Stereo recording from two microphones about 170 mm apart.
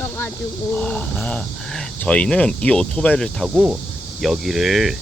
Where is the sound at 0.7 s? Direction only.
10° left (ahead or behind).